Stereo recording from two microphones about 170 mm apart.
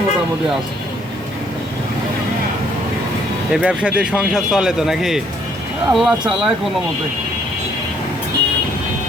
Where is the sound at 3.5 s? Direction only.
5° right (ahead or behind).